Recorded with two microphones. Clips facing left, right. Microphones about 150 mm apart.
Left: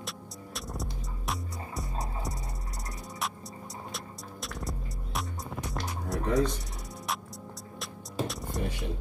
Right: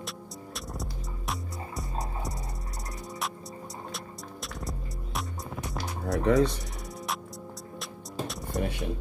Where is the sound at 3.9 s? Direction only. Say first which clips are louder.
Right 1 dB; centre (ahead or behind).